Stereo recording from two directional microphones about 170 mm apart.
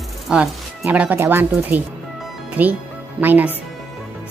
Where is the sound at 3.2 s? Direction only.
10° right (ahead or behind).